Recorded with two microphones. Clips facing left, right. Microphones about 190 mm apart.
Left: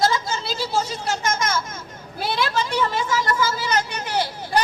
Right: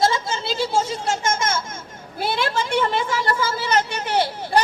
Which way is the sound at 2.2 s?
55° right (ahead or behind).